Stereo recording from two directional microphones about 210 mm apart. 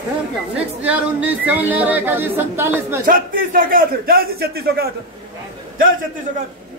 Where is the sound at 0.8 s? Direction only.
5° right (ahead or behind).